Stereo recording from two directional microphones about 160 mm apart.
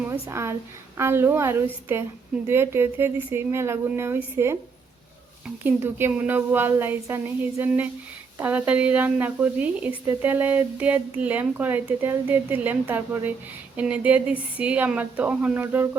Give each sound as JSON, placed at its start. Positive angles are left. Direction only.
{"t": 0.1, "sound": "speech", "side_deg": -15}
{"t": 5.6, "sound": "speech", "side_deg": -15}